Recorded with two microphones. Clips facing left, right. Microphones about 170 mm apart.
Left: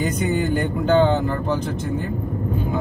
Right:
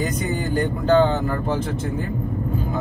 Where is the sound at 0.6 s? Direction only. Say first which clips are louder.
Right 3 dB; 40° right (ahead or behind).